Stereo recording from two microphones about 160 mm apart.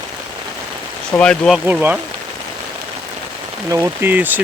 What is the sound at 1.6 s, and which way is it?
Speech, 10° right (ahead or behind).